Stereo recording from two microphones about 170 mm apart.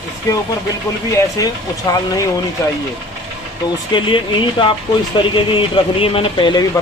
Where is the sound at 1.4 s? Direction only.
20° left (ahead or behind).